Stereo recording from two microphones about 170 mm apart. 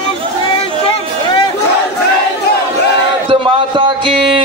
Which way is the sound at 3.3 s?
30° right (ahead or behind).